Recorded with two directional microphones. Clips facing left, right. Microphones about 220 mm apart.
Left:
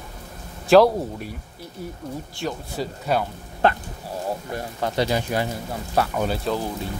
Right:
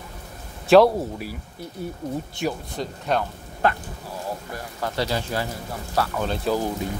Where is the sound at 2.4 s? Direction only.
15° right (ahead or behind).